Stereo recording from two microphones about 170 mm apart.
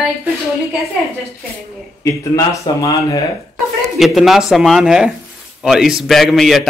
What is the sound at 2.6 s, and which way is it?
Speech, 20° left (ahead or behind).